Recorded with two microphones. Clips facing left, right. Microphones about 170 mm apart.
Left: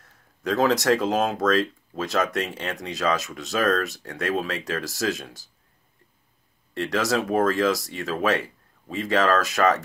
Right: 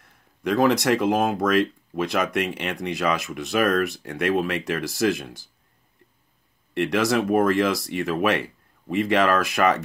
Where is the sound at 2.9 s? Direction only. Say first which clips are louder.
Left 1 dB; 60° right (ahead or behind).